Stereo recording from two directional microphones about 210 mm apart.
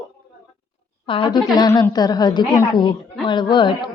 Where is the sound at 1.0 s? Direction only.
25° left (ahead or behind).